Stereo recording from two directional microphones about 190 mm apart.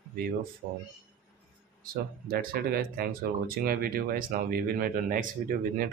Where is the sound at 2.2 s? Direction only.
50° right (ahead or behind).